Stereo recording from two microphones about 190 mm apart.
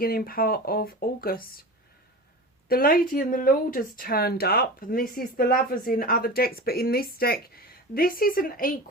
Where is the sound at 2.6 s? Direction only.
50° left (ahead or behind).